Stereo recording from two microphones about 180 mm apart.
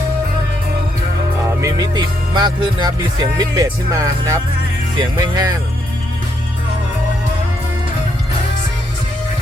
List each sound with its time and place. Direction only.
1.6 s music: 25° right (ahead or behind)